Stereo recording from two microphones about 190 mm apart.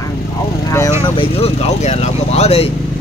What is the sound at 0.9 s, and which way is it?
Speech, 30° left (ahead or behind).